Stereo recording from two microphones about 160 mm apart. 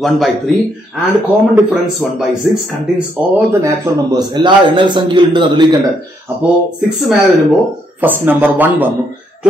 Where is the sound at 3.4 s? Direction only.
15° right (ahead or behind).